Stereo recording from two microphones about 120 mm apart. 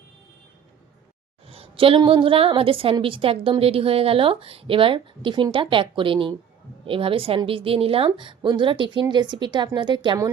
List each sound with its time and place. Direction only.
1.5 s a woman's voice: 50° right (ahead or behind)